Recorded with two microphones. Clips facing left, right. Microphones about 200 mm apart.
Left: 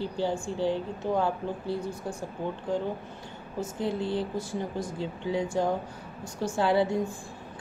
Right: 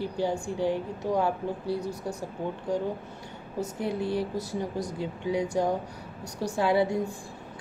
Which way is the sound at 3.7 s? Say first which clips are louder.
Even; 25° left (ahead or behind).